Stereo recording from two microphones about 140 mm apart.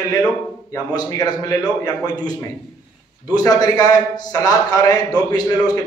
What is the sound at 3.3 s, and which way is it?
A man's voice, 25° left (ahead or behind).